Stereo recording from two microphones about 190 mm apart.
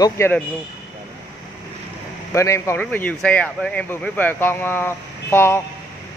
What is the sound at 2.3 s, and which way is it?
Speech, 15° left (ahead or behind).